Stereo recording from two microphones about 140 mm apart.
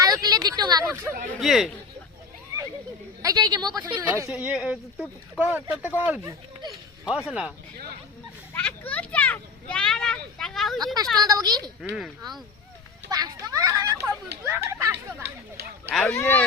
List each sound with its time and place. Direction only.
0.0 s a sound: 25° right (ahead or behind)
1.4 s speech: centre (ahead or behind)
3.2 s speech: 25° right (ahead or behind)
4.3 s speech: 10° right (ahead or behind)
8.5 s a child's voice: 10° left (ahead or behind)
11.2 s speech: 25° right (ahead or behind)
11.8 s speech: centre (ahead or behind)
13.1 s speech: 30° right (ahead or behind)
15.9 s speech: 5° left (ahead or behind)